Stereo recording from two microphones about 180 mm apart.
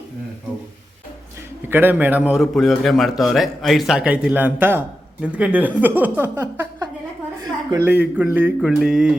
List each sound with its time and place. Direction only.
1.7 s a man's voice: 10° right (ahead or behind)
7.4 s a sound: 20° right (ahead or behind)
7.9 s speech: 10° right (ahead or behind)